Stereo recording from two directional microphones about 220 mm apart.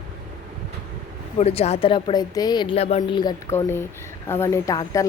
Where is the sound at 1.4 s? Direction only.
30° left (ahead or behind).